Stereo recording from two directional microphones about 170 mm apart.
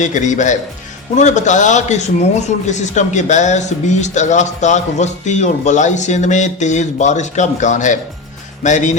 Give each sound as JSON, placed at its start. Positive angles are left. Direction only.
{"t": 0.0, "sound": "speech", "side_deg": 45}